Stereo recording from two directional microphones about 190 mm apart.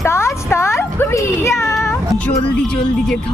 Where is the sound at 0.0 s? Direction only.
15° left (ahead or behind).